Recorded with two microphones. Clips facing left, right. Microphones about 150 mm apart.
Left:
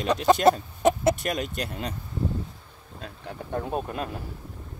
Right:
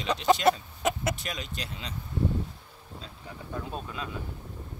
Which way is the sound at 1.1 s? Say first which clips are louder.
Left 8 dB; 50° left (ahead or behind).